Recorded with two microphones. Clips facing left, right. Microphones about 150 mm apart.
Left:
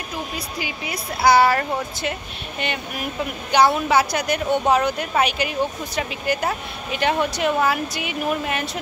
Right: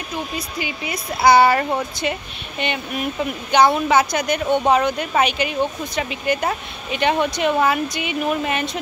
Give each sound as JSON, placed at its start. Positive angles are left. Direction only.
{"t": 0.8, "sound": "speech", "side_deg": 5}